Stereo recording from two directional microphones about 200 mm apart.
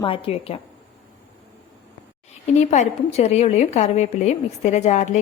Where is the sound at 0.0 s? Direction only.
25° left (ahead or behind).